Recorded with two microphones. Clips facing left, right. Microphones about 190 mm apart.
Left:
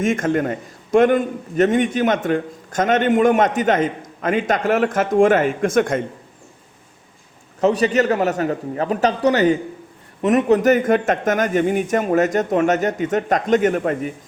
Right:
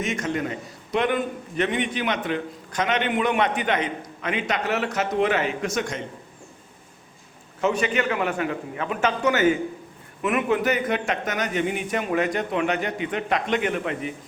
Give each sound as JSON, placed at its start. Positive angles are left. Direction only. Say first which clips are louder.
{"t": 0.0, "sound": "a man's voice", "louder": "left 8 dB", "side_deg": 50}
{"t": 7.6, "sound": "a man's voice", "louder": "left 7 dB", "side_deg": 35}